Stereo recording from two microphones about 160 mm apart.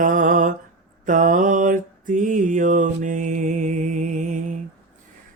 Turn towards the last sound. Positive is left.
turn(degrees=-50)  # may be behind; listen again after turning